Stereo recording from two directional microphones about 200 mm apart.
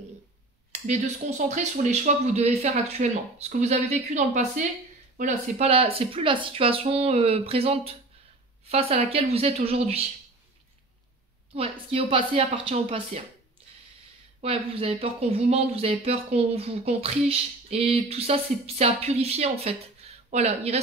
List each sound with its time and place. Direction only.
0.7 s speech: 35° right (ahead or behind)
11.5 s speech: 30° right (ahead or behind)
14.4 s speech: 30° right (ahead or behind)